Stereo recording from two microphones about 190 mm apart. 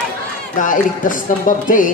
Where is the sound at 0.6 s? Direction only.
45° left (ahead or behind).